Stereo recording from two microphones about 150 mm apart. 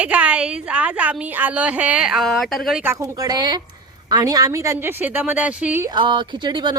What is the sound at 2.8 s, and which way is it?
A woman's voice, 20° right (ahead or behind).